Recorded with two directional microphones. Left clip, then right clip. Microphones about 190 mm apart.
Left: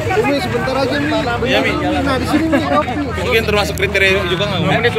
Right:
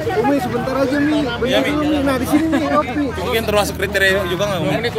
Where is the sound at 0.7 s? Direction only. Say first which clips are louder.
Even; 45° right (ahead or behind).